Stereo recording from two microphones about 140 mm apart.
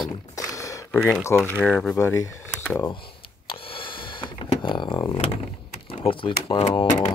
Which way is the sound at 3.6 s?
40° left (ahead or behind).